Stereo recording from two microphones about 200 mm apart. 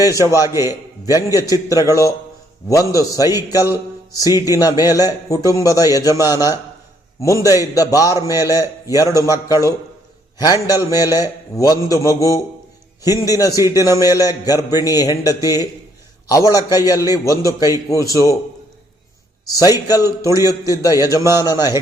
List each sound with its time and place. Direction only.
0.0 s a man's voice: 15° left (ahead or behind)
19.9 s a man's voice: 15° left (ahead or behind)
21.2 s a man's voice: 15° right (ahead or behind)
21.4 s a man's voice: 20° left (ahead or behind)